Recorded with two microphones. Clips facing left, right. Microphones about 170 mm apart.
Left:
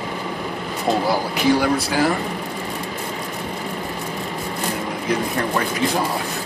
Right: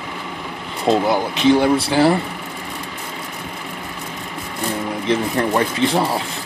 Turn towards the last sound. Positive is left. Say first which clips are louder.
# right 3 dB
turn(degrees=-30)  # may be behind; listen again after turning